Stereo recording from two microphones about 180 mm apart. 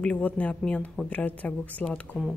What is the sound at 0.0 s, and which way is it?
Speech, 5° left (ahead or behind).